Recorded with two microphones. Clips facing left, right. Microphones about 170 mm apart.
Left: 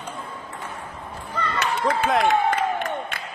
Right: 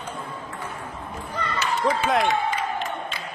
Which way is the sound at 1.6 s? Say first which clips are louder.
Even; 60° left (ahead or behind).